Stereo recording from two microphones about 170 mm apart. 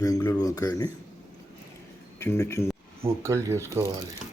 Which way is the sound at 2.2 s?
15° left (ahead or behind).